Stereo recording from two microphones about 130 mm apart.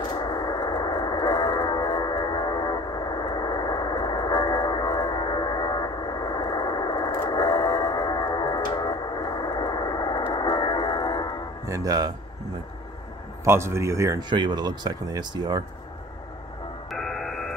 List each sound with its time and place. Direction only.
0.0 s radio: 35° left (ahead or behind)
11.6 s music: 25° right (ahead or behind)
13.4 s speech: 20° right (ahead or behind)
14.3 s speech: 35° right (ahead or behind)
16.9 s music: centre (ahead or behind)